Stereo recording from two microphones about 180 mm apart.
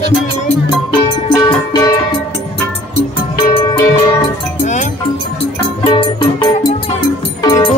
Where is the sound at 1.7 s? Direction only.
20° left (ahead or behind).